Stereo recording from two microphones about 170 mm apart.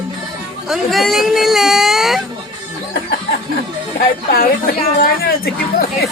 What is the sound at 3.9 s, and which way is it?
Speech, 60° left (ahead or behind).